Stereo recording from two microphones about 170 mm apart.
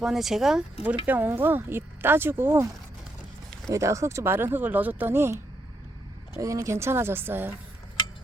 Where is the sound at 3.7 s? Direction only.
15° right (ahead or behind).